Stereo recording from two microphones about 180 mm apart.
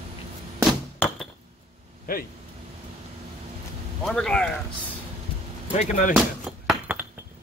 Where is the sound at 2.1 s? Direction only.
50° left (ahead or behind).